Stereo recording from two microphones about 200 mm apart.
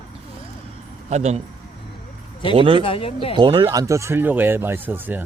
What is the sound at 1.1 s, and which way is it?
Speech, 35° right (ahead or behind).